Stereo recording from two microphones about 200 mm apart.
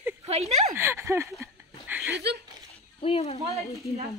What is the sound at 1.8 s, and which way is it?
Chuckle, 5° right (ahead or behind).